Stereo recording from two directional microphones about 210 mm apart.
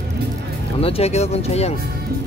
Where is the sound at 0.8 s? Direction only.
30° left (ahead or behind).